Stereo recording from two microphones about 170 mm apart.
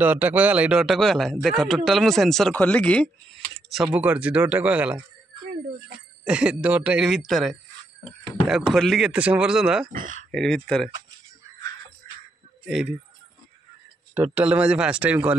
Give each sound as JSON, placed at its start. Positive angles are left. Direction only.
{"t": 0.0, "sound": "speech", "side_deg": -10}
{"t": 6.2, "sound": "speech", "side_deg": -5}
{"t": 9.9, "sound": "speech", "side_deg": -50}
{"t": 10.3, "sound": "speech", "side_deg": 5}
{"t": 12.6, "sound": "speech", "side_deg": -5}
{"t": 14.1, "sound": "a man's voice", "side_deg": -10}